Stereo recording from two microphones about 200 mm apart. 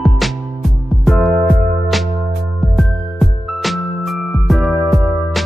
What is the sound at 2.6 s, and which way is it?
Music, centre (ahead or behind).